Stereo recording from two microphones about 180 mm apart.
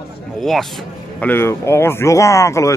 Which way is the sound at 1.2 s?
10° left (ahead or behind).